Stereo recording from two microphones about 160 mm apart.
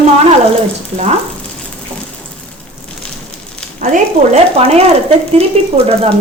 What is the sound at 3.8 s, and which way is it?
Speech, 50° right (ahead or behind).